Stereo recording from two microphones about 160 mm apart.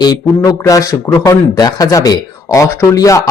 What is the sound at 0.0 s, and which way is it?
Speech, 25° left (ahead or behind).